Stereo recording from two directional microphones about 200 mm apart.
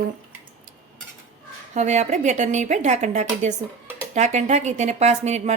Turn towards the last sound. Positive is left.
turn(degrees=-35)  # may be behind; listen again after turning